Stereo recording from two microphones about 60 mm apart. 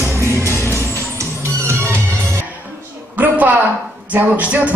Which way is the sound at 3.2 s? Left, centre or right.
Right.